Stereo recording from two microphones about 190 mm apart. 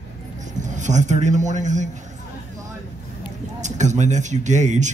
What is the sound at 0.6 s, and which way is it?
Speech, 40° right (ahead or behind).